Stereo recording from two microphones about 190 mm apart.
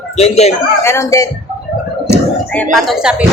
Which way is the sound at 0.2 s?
35° left (ahead or behind).